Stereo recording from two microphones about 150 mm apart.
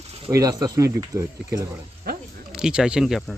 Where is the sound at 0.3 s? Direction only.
20° right (ahead or behind).